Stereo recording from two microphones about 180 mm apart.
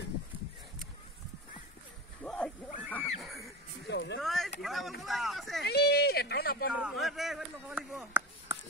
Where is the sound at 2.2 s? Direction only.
5° left (ahead or behind).